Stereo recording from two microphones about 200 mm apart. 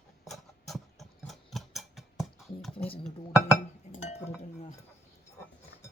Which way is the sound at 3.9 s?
35° left (ahead or behind).